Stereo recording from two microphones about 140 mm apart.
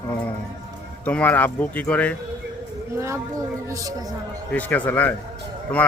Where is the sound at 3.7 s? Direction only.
25° right (ahead or behind).